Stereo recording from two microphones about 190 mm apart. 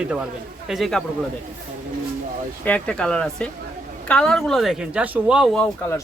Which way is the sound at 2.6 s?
5° left (ahead or behind).